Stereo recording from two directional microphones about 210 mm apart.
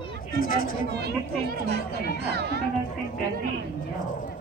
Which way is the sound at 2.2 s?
50° right (ahead or behind).